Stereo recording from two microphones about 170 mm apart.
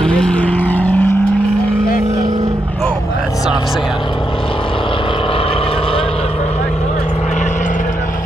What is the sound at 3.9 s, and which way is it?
Vehicle, 30° left (ahead or behind).